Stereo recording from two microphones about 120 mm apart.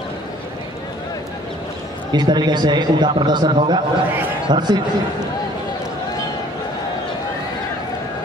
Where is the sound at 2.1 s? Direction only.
35° right (ahead or behind).